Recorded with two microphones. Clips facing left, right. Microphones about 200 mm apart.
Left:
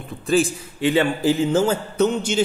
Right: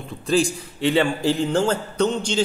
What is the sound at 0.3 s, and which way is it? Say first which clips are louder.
A man's voice: left 1 dB; 5° left (ahead or behind).